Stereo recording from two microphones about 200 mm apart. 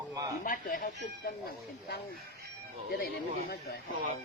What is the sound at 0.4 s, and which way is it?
Speech, 45° left (ahead or behind).